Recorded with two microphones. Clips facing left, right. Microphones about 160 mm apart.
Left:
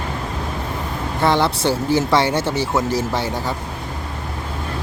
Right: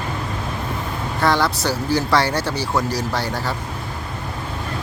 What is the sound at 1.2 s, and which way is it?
Speech, 25° left (ahead or behind).